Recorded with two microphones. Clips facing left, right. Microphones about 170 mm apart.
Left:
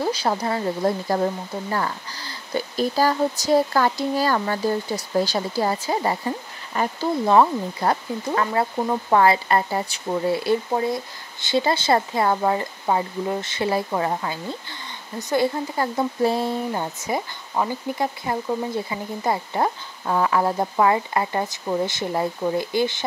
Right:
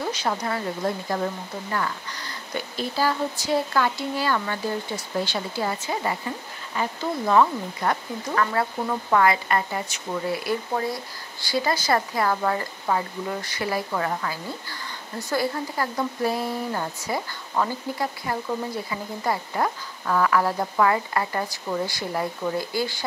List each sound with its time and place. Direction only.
0.0 s speech: 35° left (ahead or behind)